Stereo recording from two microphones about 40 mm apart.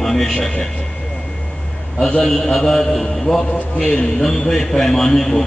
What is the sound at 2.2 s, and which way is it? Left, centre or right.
A man's voice, centre.